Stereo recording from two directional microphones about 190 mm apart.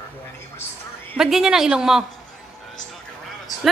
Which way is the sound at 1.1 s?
5° right (ahead or behind).